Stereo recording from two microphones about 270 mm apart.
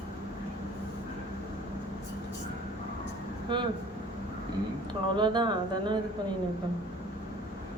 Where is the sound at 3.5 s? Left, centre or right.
Centre.